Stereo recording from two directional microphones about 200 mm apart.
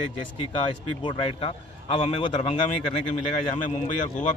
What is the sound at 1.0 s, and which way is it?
Speech, 25° left (ahead or behind).